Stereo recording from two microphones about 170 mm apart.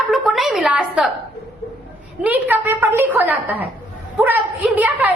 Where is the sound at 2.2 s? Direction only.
10° right (ahead or behind).